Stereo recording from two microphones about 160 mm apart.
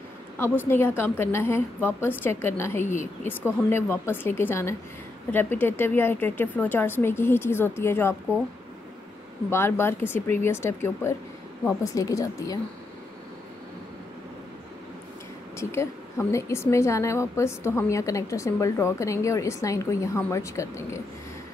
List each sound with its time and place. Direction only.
0.4 s a woman's voice: 15° left (ahead or behind)
2.8 s a woman's voice: 50° left (ahead or behind)
3.7 s a woman's voice: 15° left (ahead or behind)
9.5 s a woman's voice: 15° left (ahead or behind)
15.5 s a woman's voice: 15° left (ahead or behind)